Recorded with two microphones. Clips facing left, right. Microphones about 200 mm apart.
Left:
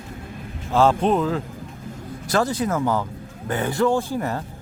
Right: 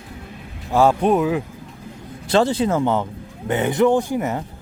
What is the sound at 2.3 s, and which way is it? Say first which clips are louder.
A man's voice: right 4 dB; 25° right (ahead or behind).